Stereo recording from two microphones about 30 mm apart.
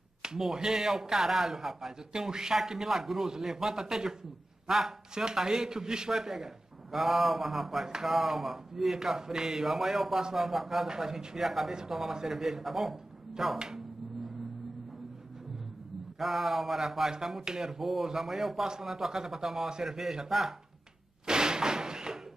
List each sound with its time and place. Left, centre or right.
0.6 s a man's voice: centre
2.1 s a man's voice: right
5.1 s a man's voice: right; by 7.8 s centre
7.8 s a man's voice: centre
8.1 s speech: centre
8.9 s a man's voice: centre
9.7 s speech: centre
10.9 s a man's voice: centre
16.2 s speech: centre
17.4 s speech: right
17.7 s a man's voice: centre
21.3 s a sound: right